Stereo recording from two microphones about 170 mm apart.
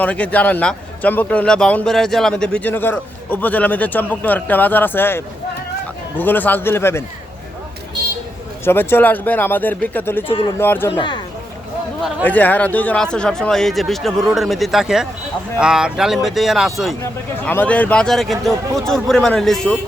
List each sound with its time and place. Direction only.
0.0 s a man's voice: 10° left (ahead or behind)
8.6 s a man's voice: 15° left (ahead or behind)
10.2 s a man's voice: 30° left (ahead or behind)
10.6 s a man's voice: 15° left (ahead or behind)
12.2 s speech: 10° left (ahead or behind)